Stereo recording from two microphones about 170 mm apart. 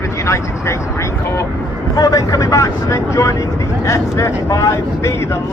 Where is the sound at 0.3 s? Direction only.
15° left (ahead or behind).